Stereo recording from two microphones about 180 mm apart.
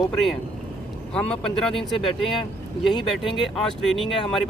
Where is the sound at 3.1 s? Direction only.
Centre (ahead or behind).